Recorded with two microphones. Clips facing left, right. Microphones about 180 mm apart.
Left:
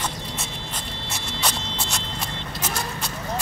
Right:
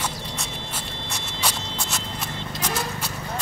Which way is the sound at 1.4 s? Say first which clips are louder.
Even; 5° right (ahead or behind).